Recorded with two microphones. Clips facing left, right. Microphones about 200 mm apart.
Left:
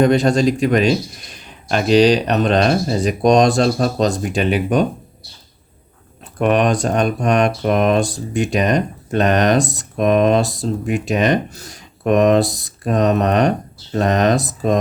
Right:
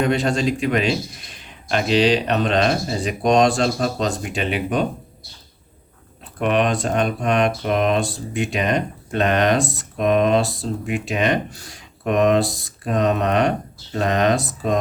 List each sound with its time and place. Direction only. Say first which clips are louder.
0.0 s speech: left 6 dB; 40° left (ahead or behind)
6.4 s speech: left 4 dB; 45° left (ahead or behind)